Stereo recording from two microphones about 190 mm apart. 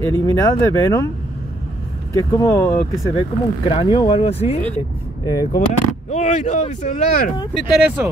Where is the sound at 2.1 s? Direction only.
20° left (ahead or behind).